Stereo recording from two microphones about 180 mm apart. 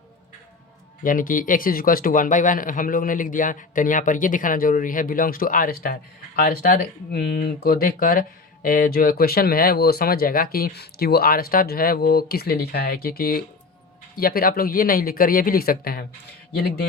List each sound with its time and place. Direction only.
1.0 s speech: 50° left (ahead or behind)